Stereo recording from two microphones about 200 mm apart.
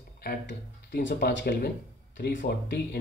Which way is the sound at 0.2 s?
55° left (ahead or behind).